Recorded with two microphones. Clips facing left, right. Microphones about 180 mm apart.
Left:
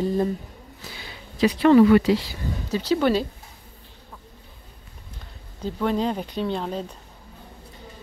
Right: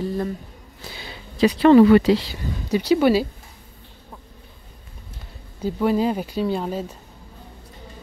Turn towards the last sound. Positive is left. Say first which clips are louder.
# right 3 dB
turn(degrees=-5)  # may be behind; listen again after turning